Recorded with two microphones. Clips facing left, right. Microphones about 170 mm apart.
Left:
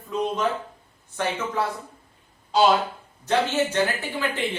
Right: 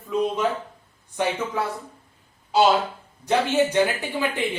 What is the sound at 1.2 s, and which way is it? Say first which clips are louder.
Speech: right 3 dB; 15° right (ahead or behind).